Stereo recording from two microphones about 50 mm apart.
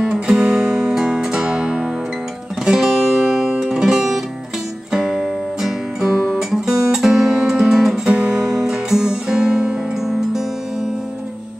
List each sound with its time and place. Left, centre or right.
0.0 s music: centre
8.1 s music: centre
8.5 s music: centre